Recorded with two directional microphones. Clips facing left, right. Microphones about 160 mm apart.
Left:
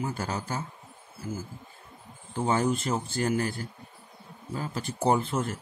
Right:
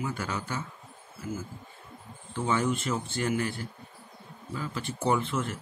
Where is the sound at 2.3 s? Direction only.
40° left (ahead or behind).